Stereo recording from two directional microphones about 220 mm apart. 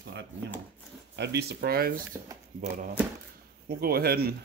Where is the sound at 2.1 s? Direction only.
15° right (ahead or behind).